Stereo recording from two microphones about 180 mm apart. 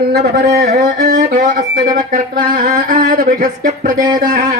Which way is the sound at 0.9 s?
45° right (ahead or behind).